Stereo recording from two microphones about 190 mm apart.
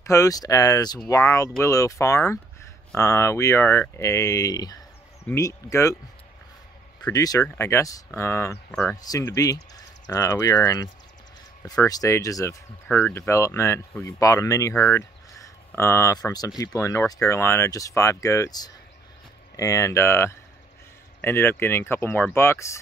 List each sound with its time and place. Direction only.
0.0 s speech: 15° left (ahead or behind)
7.1 s speech: 20° left (ahead or behind)